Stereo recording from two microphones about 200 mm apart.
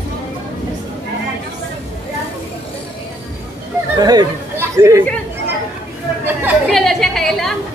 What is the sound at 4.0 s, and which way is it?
Speech, 20° right (ahead or behind).